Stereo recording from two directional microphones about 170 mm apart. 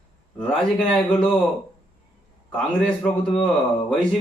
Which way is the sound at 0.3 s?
5° left (ahead or behind).